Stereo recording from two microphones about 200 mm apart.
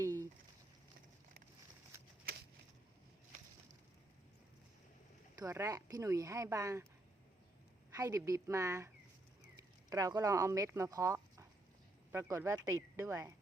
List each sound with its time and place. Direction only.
0.0 s a sound: 15° right (ahead or behind)
5.4 s speech: 15° right (ahead or behind)
7.9 s speech: 15° right (ahead or behind)
9.9 s speech: 15° right (ahead or behind)